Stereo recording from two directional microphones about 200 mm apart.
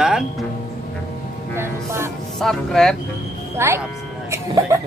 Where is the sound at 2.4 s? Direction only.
5° left (ahead or behind).